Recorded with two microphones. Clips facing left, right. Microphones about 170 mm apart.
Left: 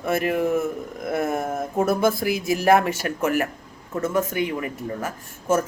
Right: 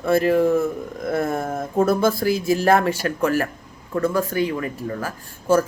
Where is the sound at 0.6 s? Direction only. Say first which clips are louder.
Right 3 dB; 20° left (ahead or behind).